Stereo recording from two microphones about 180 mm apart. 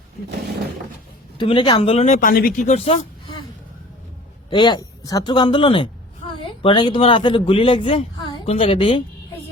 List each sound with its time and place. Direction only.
1.4 s speech: 25° left (ahead or behind)
4.4 s a man's voice: 25° left (ahead or behind)